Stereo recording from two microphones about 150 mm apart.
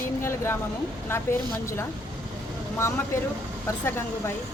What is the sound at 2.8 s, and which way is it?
Speech, 20° left (ahead or behind).